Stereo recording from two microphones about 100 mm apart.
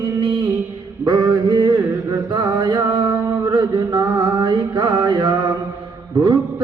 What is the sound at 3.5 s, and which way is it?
Mantra, 50° right (ahead or behind).